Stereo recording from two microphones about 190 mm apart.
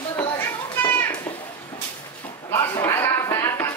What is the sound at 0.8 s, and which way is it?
Children playing, 10° left (ahead or behind).